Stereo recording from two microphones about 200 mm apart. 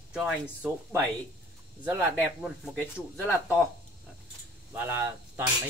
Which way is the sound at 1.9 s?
5° right (ahead or behind).